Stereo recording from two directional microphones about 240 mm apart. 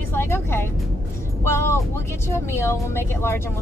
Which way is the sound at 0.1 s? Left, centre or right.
Centre.